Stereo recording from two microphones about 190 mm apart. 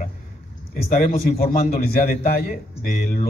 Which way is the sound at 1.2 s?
55° left (ahead or behind).